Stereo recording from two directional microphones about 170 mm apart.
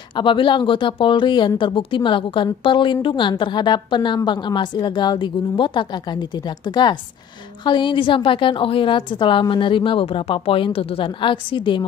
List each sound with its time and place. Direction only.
0.1 s speech: 30° left (ahead or behind)